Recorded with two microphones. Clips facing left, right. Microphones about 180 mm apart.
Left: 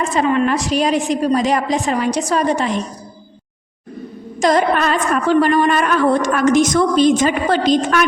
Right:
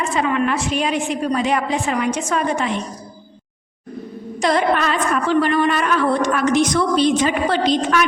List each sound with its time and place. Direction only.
0.1 s a woman's voice: 35° left (ahead or behind)
4.4 s a woman's voice: 45° left (ahead or behind)